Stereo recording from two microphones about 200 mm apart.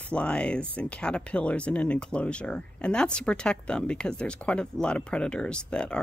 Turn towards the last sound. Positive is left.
turn(degrees=5)  # may be behind; listen again after turning